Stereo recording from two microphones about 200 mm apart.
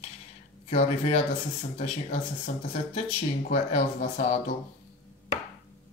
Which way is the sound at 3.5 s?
40° left (ahead or behind).